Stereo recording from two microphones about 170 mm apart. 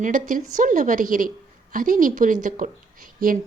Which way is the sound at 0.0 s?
50° right (ahead or behind).